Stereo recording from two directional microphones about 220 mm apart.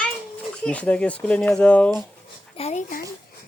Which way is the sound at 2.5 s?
30° left (ahead or behind).